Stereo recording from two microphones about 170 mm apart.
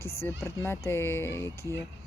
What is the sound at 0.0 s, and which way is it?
A woman's voice, 15° left (ahead or behind).